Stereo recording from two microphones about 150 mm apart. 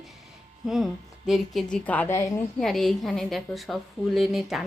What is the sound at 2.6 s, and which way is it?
A woman's voice, centre (ahead or behind).